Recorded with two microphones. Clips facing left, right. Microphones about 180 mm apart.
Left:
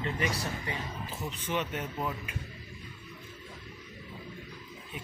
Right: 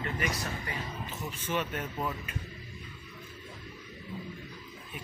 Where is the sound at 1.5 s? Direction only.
20° left (ahead or behind).